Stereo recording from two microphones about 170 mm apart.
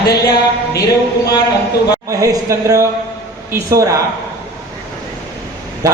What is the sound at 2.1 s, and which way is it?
Speech, 20° right (ahead or behind).